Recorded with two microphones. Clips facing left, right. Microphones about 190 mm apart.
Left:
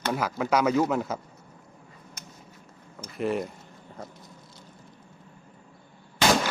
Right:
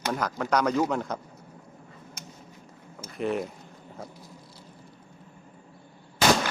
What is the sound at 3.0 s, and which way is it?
Speech, centre (ahead or behind).